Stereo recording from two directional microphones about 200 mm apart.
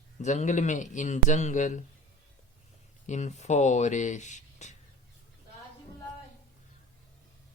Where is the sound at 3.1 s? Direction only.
35° left (ahead or behind).